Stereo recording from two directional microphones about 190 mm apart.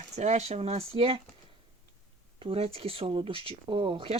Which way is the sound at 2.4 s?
30° right (ahead or behind).